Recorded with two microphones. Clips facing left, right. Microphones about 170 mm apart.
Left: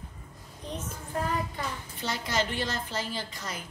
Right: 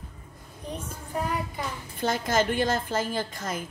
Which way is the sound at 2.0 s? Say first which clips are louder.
Right 6 dB; 50° right (ahead or behind).